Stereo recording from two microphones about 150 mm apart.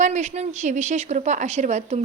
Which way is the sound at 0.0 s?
50° right (ahead or behind).